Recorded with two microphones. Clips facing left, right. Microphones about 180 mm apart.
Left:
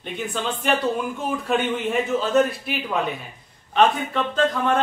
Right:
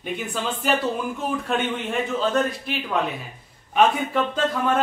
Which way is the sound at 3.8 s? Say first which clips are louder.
Even; 10° right (ahead or behind).